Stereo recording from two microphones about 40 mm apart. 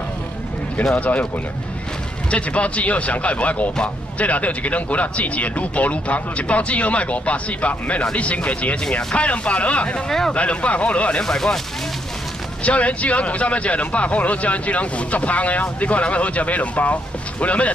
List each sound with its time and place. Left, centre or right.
0.9 s speech: left
2.3 s speech: left
11.2 s speech: centre
12.6 s speech: left